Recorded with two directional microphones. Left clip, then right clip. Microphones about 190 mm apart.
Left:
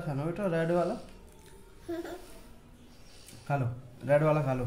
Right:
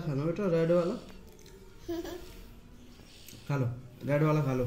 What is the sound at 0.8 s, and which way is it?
Speech, 25° left (ahead or behind).